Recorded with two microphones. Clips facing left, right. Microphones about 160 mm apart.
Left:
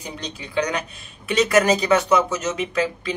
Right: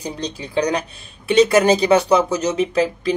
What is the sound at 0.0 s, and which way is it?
Speech, 35° right (ahead or behind).